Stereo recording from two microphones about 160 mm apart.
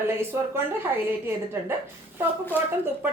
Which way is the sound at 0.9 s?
15° right (ahead or behind).